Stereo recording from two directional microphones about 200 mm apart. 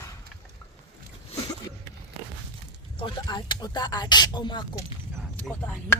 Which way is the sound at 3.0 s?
25° left (ahead or behind).